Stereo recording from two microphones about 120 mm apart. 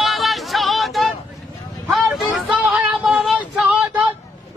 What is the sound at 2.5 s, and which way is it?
Child singing, 10° right (ahead or behind).